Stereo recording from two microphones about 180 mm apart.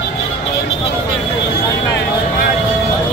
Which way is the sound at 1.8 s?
75° left (ahead or behind).